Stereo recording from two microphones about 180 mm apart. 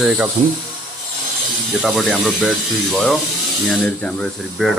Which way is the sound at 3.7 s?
5° left (ahead or behind).